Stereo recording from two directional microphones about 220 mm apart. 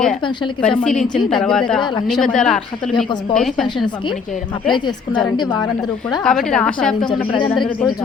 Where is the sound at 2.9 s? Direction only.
20° left (ahead or behind).